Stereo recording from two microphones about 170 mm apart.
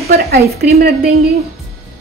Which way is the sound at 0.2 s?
65° right (ahead or behind).